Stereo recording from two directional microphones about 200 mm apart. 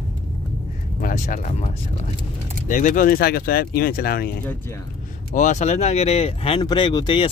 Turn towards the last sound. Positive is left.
turn(degrees=25)  # may be behind; listen again after turning